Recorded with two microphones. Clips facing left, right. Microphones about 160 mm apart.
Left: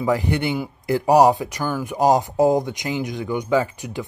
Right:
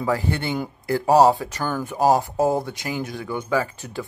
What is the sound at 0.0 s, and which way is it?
Speech, 15° left (ahead or behind).